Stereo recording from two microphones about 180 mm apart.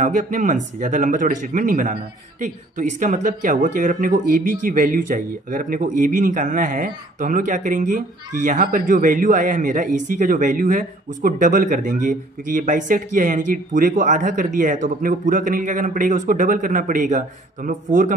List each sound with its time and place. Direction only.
0.0 s speech: 45° right (ahead or behind)